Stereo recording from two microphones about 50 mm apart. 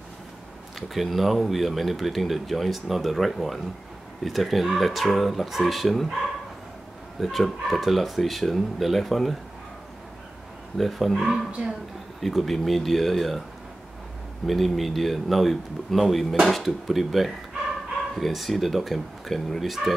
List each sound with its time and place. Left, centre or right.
0.7 s speech: centre
7.2 s speech: centre
10.8 s speech: centre
11.6 s a woman's voice: centre
12.2 s speech: centre
14.4 s speech: centre